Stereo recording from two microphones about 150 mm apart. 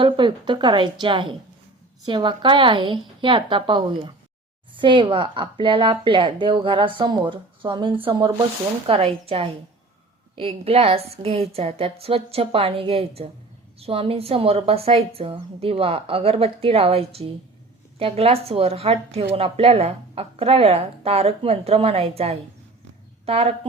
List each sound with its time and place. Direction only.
0.0 s a woman's voice: 30° right (ahead or behind)